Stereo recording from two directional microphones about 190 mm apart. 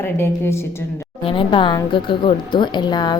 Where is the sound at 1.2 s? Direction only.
25° left (ahead or behind).